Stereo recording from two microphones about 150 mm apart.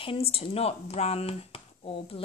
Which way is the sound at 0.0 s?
40° left (ahead or behind).